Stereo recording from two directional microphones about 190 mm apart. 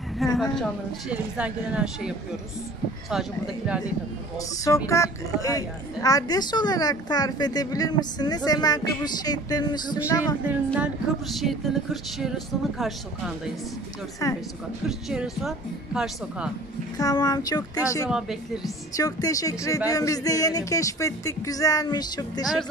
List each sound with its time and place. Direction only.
0.2 s music: centre (ahead or behind)
4.6 s speech: 15° left (ahead or behind)
10.4 s music: 5° right (ahead or behind)
14.2 s speech: 15° left (ahead or behind)
14.9 s music: centre (ahead or behind)
17.0 s speech: 20° left (ahead or behind)
18.1 s music: centre (ahead or behind)
18.9 s speech: 20° left (ahead or behind)